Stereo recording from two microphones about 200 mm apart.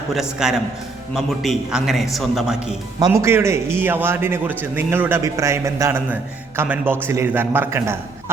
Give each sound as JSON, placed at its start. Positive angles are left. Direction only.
{"t": 0.1, "sound": "speech", "side_deg": 0}
{"t": 3.0, "sound": "a man's voice", "side_deg": -15}